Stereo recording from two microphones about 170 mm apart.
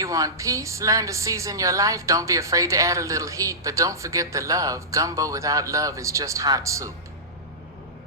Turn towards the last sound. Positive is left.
turn(degrees=-20)  # may be behind; listen again after turning